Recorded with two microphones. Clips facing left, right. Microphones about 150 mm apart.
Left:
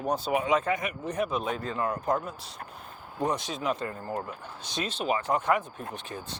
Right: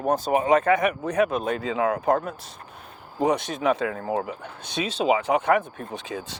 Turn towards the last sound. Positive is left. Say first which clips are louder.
# right 5 dB
turn(degrees=-90)